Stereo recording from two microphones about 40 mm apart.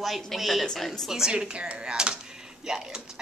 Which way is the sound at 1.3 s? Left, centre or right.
Right.